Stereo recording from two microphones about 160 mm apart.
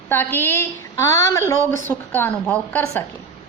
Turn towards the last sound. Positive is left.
turn(degrees=10)  # may be behind; listen again after turning